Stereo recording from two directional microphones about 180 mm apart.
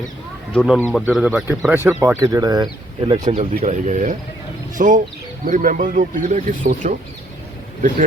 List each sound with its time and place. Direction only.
0.5 s speech: centre (ahead or behind)
2.2 s speech: 20° right (ahead or behind)
3.3 s speech: 40° right (ahead or behind)